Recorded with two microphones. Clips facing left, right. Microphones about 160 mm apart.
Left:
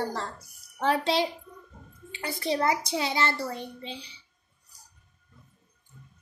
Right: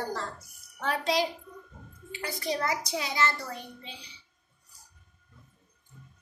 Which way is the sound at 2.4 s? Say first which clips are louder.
Left 5 dB; 25° left (ahead or behind).